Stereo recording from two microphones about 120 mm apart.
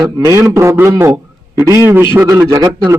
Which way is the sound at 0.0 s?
25° right (ahead or behind).